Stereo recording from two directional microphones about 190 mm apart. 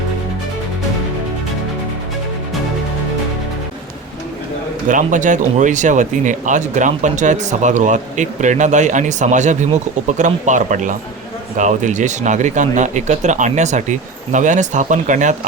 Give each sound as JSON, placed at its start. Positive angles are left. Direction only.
{"t": 4.9, "sound": "speech", "side_deg": -45}